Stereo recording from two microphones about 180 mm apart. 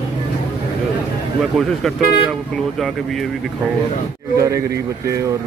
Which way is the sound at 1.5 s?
Centre (ahead or behind).